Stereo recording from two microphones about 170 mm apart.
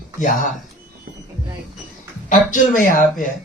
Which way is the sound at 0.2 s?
50° left (ahead or behind).